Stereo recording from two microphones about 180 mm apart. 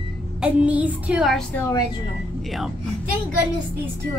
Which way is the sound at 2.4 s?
Centre (ahead or behind).